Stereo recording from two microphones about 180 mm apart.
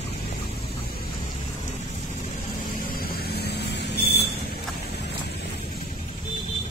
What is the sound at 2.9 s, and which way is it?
Vehicle, 55° left (ahead or behind).